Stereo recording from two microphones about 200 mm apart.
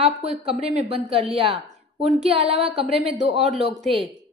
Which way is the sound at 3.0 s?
Centre (ahead or behind).